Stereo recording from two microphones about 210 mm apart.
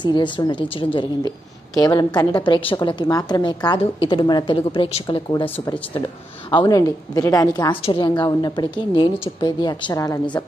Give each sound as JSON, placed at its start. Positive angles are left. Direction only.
{"t": 0.0, "sound": "a woman's voice", "side_deg": 20}